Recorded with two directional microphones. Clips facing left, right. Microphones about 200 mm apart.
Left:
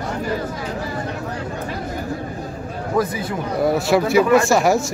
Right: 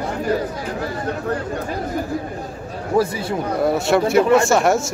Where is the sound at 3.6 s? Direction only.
Centre (ahead or behind).